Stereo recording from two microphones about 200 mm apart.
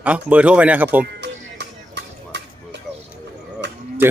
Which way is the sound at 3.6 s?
60° right (ahead or behind).